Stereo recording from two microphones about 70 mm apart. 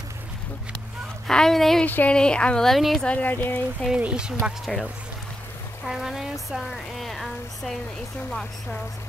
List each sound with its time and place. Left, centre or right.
1.2 s speech: centre
1.9 s speech: left
2.1 s speech: centre
3.0 s speech: centre
4.0 s speech: centre
4.7 s speech: centre
5.9 s speech: centre